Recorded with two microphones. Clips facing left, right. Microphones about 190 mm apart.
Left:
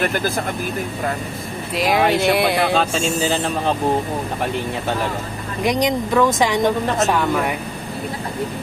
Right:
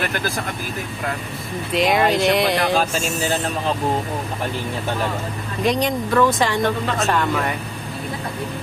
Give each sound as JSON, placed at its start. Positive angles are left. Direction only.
{"t": 1.7, "sound": "speech", "side_deg": 0}
{"t": 2.9, "sound": "speech", "side_deg": 30}
{"t": 5.6, "sound": "speech", "side_deg": 10}